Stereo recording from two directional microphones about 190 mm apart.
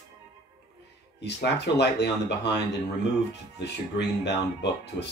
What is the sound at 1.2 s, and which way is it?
Speech, 60° left (ahead or behind).